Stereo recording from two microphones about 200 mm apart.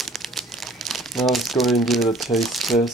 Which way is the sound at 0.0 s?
Centre (ahead or behind).